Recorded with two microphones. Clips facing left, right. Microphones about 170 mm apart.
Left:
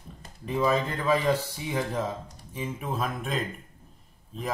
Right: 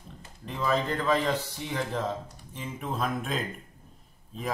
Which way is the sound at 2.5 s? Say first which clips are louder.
Left 2 dB; 10° left (ahead or behind).